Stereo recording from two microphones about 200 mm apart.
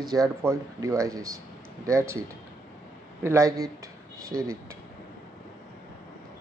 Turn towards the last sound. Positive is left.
turn(degrees=-15)  # may be behind; listen again after turning